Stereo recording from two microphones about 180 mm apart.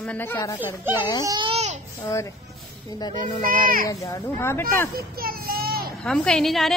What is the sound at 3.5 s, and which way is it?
Speech, 50° right (ahead or behind).